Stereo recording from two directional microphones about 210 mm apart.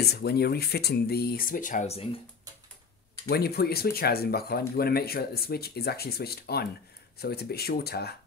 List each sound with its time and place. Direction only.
0.0 s speech: 50° left (ahead or behind); by 2.0 s 35° left (ahead or behind)
3.3 s speech: 50° left (ahead or behind)